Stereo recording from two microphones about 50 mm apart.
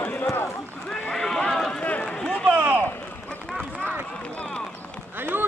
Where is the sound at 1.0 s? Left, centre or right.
Centre.